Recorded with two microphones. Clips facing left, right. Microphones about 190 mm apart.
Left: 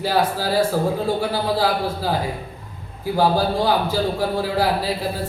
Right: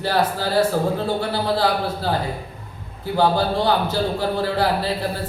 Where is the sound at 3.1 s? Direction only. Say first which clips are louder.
Even; 10° left (ahead or behind).